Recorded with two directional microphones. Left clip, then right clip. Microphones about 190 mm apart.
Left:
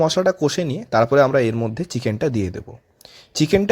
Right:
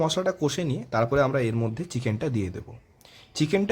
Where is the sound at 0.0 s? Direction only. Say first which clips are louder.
Left 8 dB; 30° left (ahead or behind).